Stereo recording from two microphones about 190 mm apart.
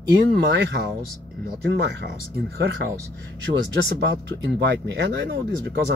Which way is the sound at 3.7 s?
60° right (ahead or behind).